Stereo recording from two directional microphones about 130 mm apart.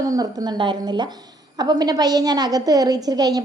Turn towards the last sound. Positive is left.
turn(degrees=-30)  # may be behind; listen again after turning